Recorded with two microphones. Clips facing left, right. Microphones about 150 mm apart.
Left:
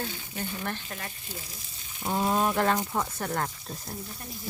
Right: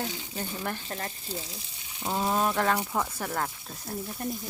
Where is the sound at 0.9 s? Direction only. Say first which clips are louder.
Right 4 dB; 35° right (ahead or behind).